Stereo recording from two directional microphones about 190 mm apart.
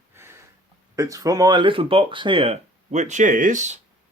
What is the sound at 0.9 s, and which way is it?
Speech, 15° right (ahead or behind).